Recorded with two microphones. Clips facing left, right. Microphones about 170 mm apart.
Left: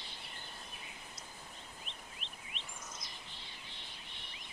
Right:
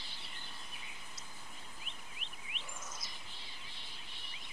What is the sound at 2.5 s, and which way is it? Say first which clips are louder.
Bird vocalization: right 2 dB; 10° right (ahead or behind).